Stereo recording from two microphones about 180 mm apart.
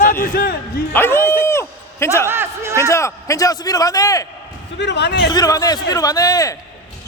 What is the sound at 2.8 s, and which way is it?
A man's voice, 15° left (ahead or behind).